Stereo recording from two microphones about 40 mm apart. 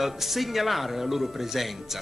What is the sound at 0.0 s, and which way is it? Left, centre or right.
Speech, centre.